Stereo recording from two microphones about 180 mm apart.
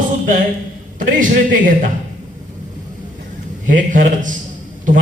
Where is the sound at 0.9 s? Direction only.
50° right (ahead or behind).